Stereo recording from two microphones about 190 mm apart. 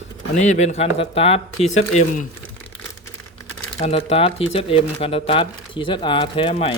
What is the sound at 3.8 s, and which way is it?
Speech, 30° left (ahead or behind).